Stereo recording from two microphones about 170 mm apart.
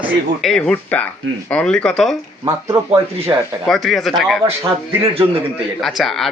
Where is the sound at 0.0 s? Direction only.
Centre (ahead or behind).